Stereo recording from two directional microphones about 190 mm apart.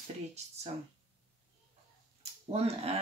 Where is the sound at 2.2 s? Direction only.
30° right (ahead or behind).